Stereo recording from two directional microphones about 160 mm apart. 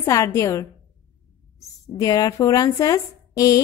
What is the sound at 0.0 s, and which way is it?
A woman's voice, 20° left (ahead or behind).